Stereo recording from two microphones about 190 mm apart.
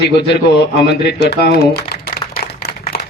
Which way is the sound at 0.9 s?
60° left (ahead or behind).